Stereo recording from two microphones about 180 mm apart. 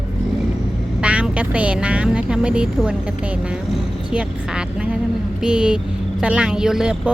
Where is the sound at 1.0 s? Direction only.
5° right (ahead or behind).